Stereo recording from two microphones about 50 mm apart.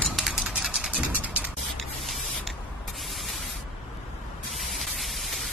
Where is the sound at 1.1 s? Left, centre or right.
Right.